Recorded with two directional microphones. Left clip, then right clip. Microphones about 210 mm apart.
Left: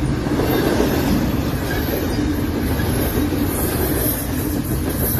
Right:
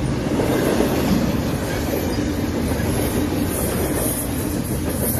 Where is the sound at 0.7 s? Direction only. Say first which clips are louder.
Left 1 dB; 50° left (ahead or behind).